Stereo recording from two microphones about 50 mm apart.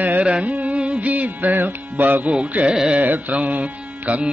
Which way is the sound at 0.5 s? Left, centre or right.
Right.